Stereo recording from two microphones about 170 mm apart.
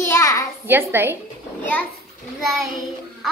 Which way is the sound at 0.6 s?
15° right (ahead or behind).